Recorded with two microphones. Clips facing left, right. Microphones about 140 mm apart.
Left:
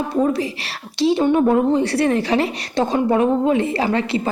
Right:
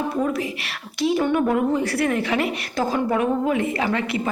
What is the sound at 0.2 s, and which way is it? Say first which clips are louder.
A woman's voice: left 5 dB; 30° left (ahead or behind).